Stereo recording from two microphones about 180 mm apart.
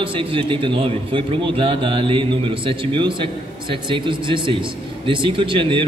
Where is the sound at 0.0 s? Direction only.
30° right (ahead or behind).